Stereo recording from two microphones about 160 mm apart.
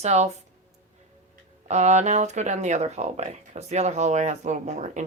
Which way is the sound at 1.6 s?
45° right (ahead or behind).